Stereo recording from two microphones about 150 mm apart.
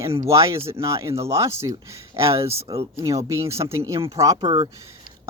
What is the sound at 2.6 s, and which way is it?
Speech, 35° right (ahead or behind).